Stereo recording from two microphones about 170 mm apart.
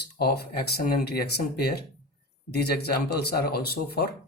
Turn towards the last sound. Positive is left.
turn(degrees=70)  # may be behind; listen again after turning